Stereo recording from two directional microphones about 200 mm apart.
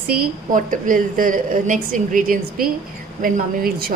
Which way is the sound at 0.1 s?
40° right (ahead or behind).